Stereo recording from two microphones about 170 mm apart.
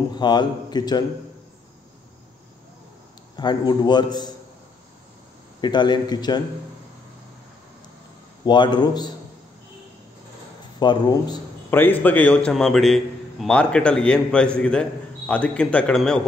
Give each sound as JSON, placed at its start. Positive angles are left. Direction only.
{"t": 0.1, "sound": "a man's voice", "side_deg": 25}
{"t": 3.3, "sound": "a man's voice", "side_deg": 25}
{"t": 5.6, "sound": "a man's voice", "side_deg": 25}
{"t": 8.5, "sound": "a man's voice", "side_deg": 25}
{"t": 10.8, "sound": "a man's voice", "side_deg": 25}
{"t": 11.7, "sound": "a man's voice", "side_deg": 10}